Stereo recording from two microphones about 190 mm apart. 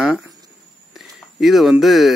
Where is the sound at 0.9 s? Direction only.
Centre (ahead or behind).